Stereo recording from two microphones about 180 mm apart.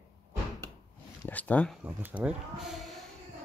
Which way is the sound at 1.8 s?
10° right (ahead or behind).